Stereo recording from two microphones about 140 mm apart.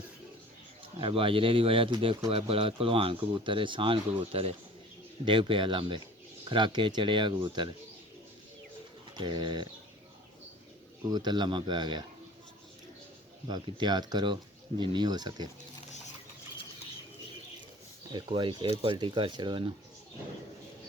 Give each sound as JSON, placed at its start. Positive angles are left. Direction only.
{"t": 0.9, "sound": "speech", "side_deg": -40}
{"t": 9.1, "sound": "speech", "side_deg": -35}
{"t": 11.1, "sound": "speech", "side_deg": -30}
{"t": 13.5, "sound": "speech", "side_deg": -30}
{"t": 18.1, "sound": "speech", "side_deg": -35}
{"t": 18.7, "sound": "speech", "side_deg": -45}